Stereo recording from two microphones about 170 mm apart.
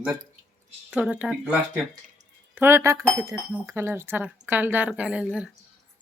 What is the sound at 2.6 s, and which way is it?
Speech, 15° right (ahead or behind).